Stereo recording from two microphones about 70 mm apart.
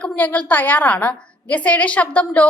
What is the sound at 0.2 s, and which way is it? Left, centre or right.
A woman's voice, left.